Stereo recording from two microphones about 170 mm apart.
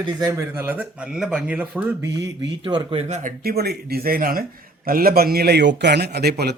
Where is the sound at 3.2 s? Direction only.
55° right (ahead or behind).